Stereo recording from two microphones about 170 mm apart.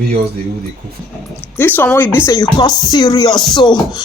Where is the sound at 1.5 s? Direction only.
10° left (ahead or behind).